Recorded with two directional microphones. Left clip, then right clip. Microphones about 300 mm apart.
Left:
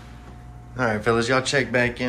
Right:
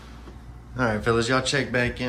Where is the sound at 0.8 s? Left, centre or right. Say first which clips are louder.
Left 2 dB; centre.